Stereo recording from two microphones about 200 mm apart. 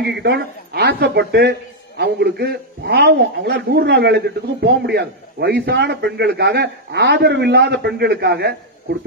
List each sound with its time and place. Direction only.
0.0 s a man's voice: 55° right (ahead or behind)